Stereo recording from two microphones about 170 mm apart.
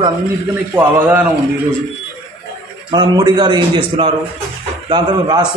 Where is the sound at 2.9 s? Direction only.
25° right (ahead or behind).